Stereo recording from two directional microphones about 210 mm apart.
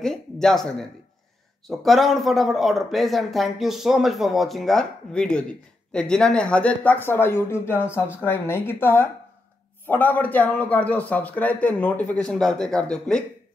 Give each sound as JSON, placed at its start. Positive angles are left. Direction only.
{"t": 0.0, "sound": "a man's voice", "side_deg": 0}